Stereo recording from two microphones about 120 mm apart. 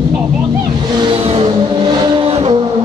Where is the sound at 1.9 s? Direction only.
40° right (ahead or behind).